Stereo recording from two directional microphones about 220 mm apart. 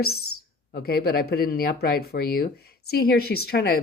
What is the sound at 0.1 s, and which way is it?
Speech, 75° left (ahead or behind).